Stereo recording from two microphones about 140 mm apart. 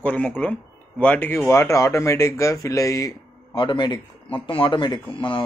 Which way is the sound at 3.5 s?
35° left (ahead or behind).